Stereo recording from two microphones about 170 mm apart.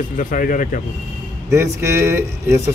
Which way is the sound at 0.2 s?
50° left (ahead or behind).